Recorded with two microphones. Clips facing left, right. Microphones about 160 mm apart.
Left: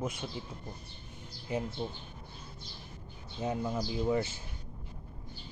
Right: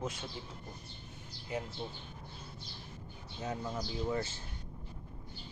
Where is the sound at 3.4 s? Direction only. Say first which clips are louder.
Left 5 dB; 15° left (ahead or behind).